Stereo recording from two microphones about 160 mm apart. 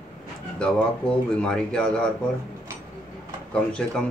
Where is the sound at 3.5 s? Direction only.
5° left (ahead or behind).